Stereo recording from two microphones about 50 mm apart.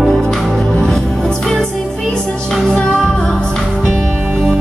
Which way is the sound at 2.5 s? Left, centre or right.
Centre.